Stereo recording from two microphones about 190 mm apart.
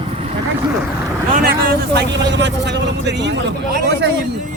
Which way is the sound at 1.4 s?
50° right (ahead or behind).